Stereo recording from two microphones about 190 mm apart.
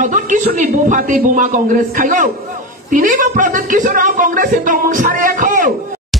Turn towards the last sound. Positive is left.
turn(degrees=-45)  # may be behind; listen again after turning